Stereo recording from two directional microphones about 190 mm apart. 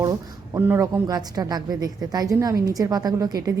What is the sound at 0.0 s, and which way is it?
A woman's voice, 15° right (ahead or behind).